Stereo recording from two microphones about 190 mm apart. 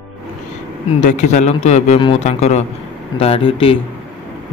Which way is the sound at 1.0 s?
40° left (ahead or behind).